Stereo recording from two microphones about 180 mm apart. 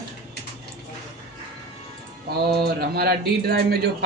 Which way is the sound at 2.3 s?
60° right (ahead or behind).